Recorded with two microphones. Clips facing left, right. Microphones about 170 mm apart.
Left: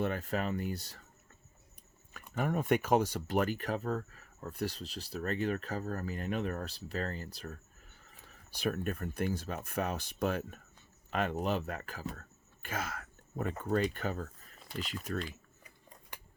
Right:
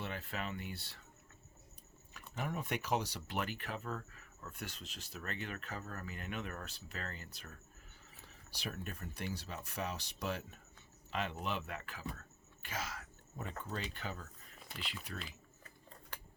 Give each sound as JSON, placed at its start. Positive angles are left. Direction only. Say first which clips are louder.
{"t": 0.0, "sound": "speech", "louder": "left 9 dB", "side_deg": 45}
{"t": 2.3, "sound": "speech", "louder": "left 9 dB", "side_deg": 50}
{"t": 8.4, "sound": "speech", "louder": "left 11 dB", "side_deg": 55}
{"t": 15.6, "sound": "scissors", "louder": "even", "side_deg": 15}